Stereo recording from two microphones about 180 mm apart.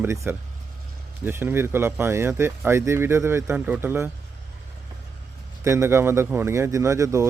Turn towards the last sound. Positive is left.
turn(degrees=-15)  # may be behind; listen again after turning